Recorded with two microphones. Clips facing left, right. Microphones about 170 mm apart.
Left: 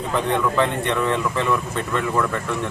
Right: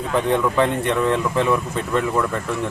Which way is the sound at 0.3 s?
Centre (ahead or behind).